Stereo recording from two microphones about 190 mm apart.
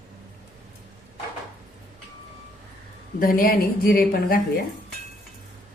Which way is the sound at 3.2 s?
50° left (ahead or behind).